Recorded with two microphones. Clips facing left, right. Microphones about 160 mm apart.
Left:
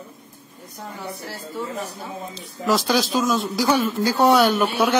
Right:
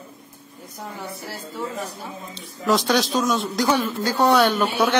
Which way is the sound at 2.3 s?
Centre (ahead or behind).